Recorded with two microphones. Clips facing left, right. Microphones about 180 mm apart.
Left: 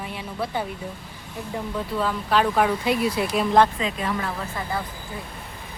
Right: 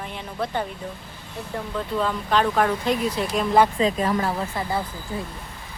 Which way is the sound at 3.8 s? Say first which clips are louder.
Right 5 dB; 40° right (ahead or behind).